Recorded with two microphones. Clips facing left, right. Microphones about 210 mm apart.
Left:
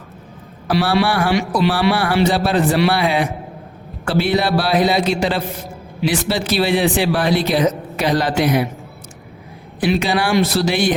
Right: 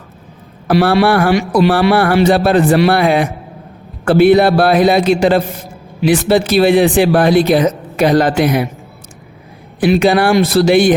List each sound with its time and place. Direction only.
0.7 s speech: 55° right (ahead or behind)
9.8 s speech: 50° right (ahead or behind)